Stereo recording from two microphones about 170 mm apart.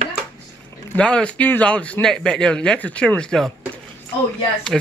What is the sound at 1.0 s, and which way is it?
A man's voice, 5° left (ahead or behind).